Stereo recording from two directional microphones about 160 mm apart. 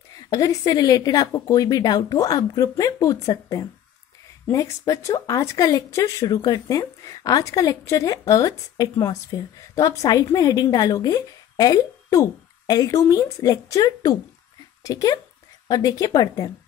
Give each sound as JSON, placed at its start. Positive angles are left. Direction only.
{"t": 0.3, "sound": "speech", "side_deg": 20}